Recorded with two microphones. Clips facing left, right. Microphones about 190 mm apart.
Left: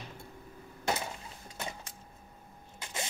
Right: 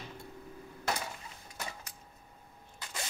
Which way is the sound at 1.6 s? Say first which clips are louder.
Left 2 dB; 25° left (ahead or behind).